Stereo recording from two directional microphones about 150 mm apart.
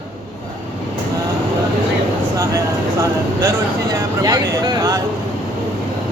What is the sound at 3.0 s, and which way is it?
Speech, 20° right (ahead or behind).